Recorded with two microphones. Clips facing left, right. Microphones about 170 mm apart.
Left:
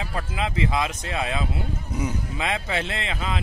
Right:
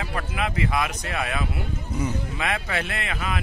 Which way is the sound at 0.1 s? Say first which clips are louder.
Even; 25° left (ahead or behind).